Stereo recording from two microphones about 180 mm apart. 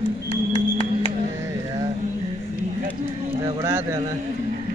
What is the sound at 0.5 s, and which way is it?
Music, 35° left (ahead or behind).